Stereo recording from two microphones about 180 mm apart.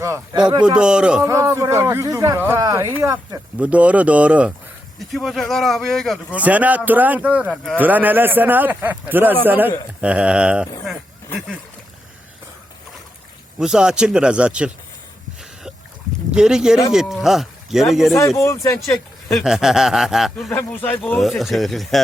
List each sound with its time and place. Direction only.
0.8 s a man's voice: 5° right (ahead or behind)
1.2 s a man's voice: 15° right (ahead or behind)
13.6 s a man's voice: 5° right (ahead or behind)
16.3 s a man's voice: 5° right (ahead or behind)
18.3 s speech: 15° left (ahead or behind)
19.3 s a man's voice: centre (ahead or behind)
20.5 s a man's voice: 10° left (ahead or behind)